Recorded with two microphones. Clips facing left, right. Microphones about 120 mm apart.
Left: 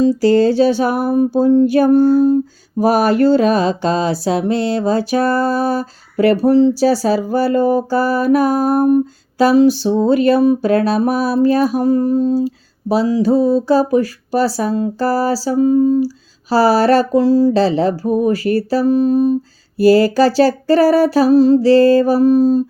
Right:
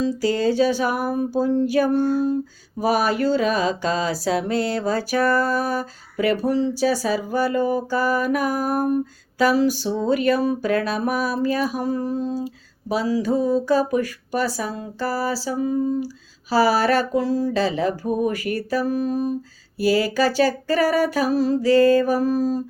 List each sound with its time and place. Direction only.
0.5 s music: 30° left (ahead or behind)
1.9 s speech: 40° left (ahead or behind)
2.9 s a sound: 55° left (ahead or behind)
3.4 s music: 30° left (ahead or behind)
6.2 s speech: 35° left (ahead or behind)
9.4 s music: 30° left (ahead or behind)
11.7 s a sound: 55° left (ahead or behind)
12.9 s speech: 30° left (ahead or behind)
19.8 s speech: 40° left (ahead or behind); by 22.6 s 25° left (ahead or behind)